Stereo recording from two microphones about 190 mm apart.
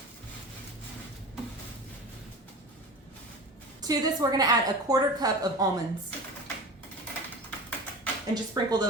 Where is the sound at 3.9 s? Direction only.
20° right (ahead or behind).